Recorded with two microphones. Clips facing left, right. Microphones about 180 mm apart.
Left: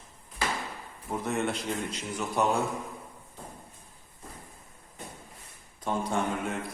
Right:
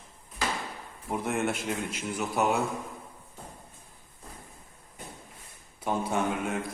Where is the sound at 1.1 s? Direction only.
10° right (ahead or behind).